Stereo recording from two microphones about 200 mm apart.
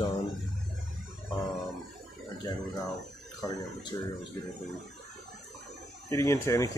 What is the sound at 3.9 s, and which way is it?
Speech, 20° left (ahead or behind).